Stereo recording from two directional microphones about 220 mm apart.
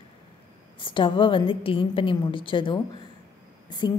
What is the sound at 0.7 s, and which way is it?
A woman's voice, 20° left (ahead or behind).